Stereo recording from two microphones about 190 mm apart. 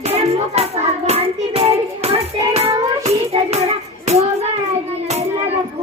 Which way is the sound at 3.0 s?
35° right (ahead or behind).